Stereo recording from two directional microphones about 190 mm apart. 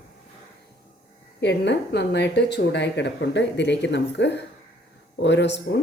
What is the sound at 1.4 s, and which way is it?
Speech, 65° left (ahead or behind).